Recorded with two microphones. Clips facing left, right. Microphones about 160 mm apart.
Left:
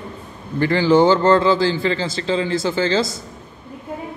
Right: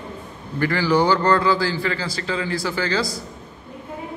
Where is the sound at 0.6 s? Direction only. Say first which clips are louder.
Left 5 dB; 25° left (ahead or behind).